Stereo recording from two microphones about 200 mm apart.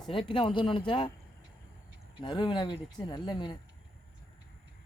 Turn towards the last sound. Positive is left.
turn(degrees=25)  # may be behind; listen again after turning